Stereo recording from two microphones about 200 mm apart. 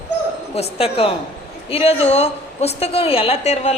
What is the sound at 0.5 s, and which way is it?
A woman's voice, 30° left (ahead or behind).